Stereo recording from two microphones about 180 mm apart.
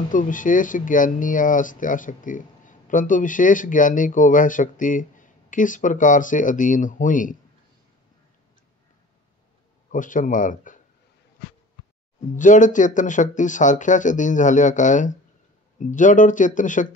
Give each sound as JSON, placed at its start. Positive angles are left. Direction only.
{"t": 0.1, "sound": "speech", "side_deg": 45}
{"t": 9.8, "sound": "a man's voice", "side_deg": 45}
{"t": 12.4, "sound": "speech", "side_deg": 45}